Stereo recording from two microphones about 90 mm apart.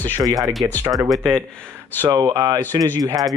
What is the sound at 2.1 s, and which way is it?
Speech, 45° right (ahead or behind).